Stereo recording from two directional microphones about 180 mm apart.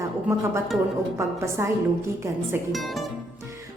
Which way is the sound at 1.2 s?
15° right (ahead or behind).